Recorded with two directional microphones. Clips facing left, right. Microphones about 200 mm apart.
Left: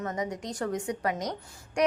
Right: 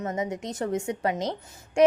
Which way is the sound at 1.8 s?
25° right (ahead or behind).